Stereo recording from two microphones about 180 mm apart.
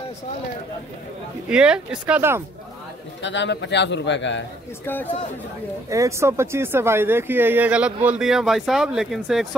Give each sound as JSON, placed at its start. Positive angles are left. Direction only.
{"t": 1.5, "sound": "speech", "side_deg": -5}
{"t": 3.2, "sound": "a man's voice", "side_deg": 80}
{"t": 4.8, "sound": "speech", "side_deg": 10}
{"t": 5.9, "sound": "speech", "side_deg": -15}